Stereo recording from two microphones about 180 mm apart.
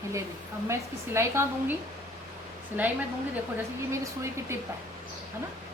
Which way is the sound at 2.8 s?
10° right (ahead or behind).